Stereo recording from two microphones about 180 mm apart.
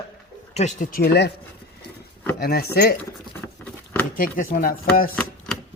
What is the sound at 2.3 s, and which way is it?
Speech, 55° left (ahead or behind).